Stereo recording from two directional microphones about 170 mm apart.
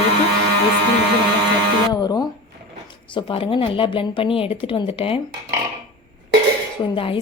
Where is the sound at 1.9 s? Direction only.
25° left (ahead or behind).